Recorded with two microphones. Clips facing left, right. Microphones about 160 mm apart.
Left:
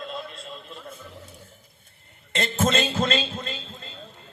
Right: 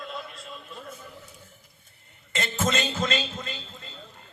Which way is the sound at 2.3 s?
30° left (ahead or behind).